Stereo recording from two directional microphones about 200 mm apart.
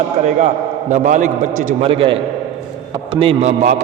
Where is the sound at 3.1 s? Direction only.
30° right (ahead or behind).